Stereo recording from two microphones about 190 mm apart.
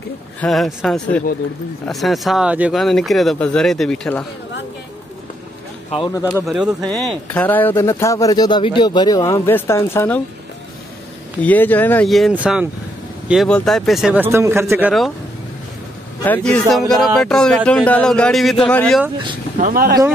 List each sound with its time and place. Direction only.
0.4 s speech: centre (ahead or behind)
6.1 s speech: 15° left (ahead or behind)
6.4 s speech: centre (ahead or behind)
11.4 s speech: 10° left (ahead or behind)
16.3 s speech: 5° left (ahead or behind)
19.6 s speech: 50° right (ahead or behind)